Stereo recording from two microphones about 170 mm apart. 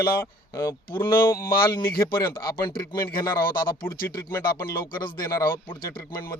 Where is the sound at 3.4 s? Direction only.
60° left (ahead or behind).